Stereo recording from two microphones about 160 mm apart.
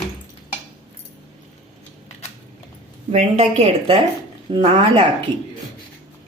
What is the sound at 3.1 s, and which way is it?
A woman's voice, 40° right (ahead or behind).